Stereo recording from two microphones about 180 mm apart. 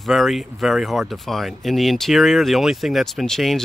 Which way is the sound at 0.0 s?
Centre (ahead or behind).